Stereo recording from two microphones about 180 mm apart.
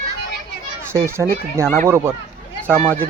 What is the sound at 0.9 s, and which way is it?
Speech, 15° right (ahead or behind).